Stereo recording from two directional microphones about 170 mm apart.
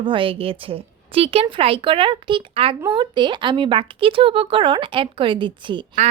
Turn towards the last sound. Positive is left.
turn(degrees=-30)  # may be behind; listen again after turning